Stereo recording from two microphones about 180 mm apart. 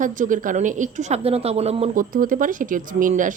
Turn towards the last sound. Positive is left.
turn(degrees=-45)  # may be behind; listen again after turning